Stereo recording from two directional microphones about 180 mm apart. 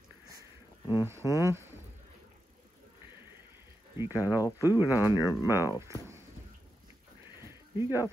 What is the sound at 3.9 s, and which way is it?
Speech, 10° right (ahead or behind).